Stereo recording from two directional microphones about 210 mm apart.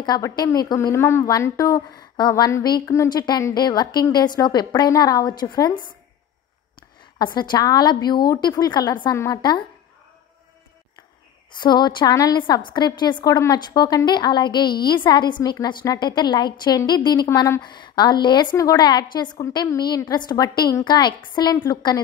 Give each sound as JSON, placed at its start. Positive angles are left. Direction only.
{"t": 0.0, "sound": "a woman's voice", "side_deg": 20}
{"t": 7.3, "sound": "a woman's voice", "side_deg": 20}
{"t": 11.6, "sound": "a woman's voice", "side_deg": 20}